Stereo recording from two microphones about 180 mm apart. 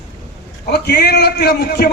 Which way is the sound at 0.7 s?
65° left (ahead or behind).